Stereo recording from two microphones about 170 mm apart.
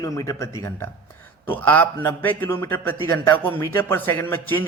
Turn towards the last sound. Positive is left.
turn(degrees=10)  # may be behind; listen again after turning